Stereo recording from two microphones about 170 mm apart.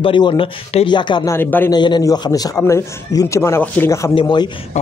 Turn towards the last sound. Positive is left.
turn(degrees=30)  # may be behind; listen again after turning